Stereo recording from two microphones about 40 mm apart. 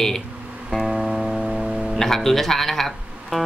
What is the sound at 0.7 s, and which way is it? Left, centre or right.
Music, centre.